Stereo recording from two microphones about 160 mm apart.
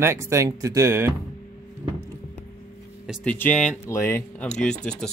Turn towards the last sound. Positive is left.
turn(degrees=5)  # may be behind; listen again after turning